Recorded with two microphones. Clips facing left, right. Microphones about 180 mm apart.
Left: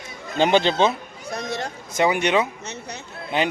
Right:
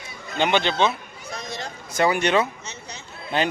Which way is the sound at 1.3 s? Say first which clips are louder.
Left 5 dB; 65° left (ahead or behind).